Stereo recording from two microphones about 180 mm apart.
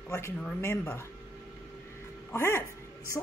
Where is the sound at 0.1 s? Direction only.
10° left (ahead or behind).